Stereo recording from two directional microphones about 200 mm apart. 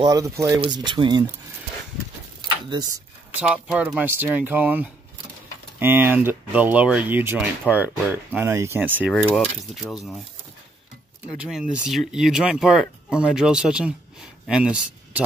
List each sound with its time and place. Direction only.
0.0 s speech: 15° right (ahead or behind)
2.4 s speech: 20° right (ahead or behind)
3.3 s speech: 5° right (ahead or behind)
9.1 s speech: 5° left (ahead or behind)
11.3 s speech: 5° right (ahead or behind)